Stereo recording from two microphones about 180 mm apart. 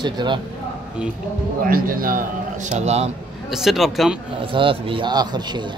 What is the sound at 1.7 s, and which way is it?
A man's voice, 50° right (ahead or behind).